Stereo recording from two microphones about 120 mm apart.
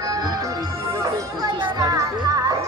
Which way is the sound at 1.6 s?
30° right (ahead or behind).